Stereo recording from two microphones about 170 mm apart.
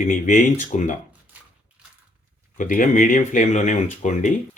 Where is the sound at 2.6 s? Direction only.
50° left (ahead or behind).